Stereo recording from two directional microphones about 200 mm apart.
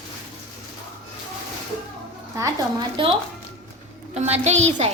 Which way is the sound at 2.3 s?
20° right (ahead or behind).